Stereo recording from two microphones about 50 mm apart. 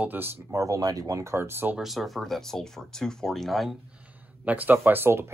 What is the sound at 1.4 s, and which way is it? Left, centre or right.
Speech, right.